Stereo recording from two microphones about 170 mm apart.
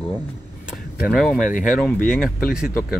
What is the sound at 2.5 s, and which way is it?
Speech, 5° right (ahead or behind).